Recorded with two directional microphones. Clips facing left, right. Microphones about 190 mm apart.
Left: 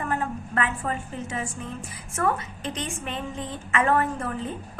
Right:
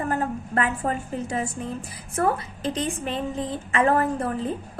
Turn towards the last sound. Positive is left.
turn(degrees=-35)  # may be behind; listen again after turning